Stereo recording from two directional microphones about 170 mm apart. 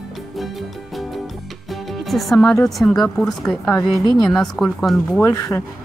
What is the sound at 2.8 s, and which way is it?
Speech, 10° left (ahead or behind).